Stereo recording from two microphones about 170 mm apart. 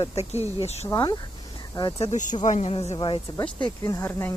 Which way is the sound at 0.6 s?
40° left (ahead or behind).